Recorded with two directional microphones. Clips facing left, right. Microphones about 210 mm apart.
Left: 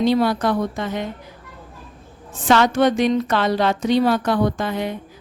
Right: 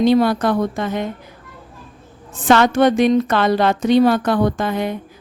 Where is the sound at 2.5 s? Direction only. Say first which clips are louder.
Right 3 dB; 55° right (ahead or behind).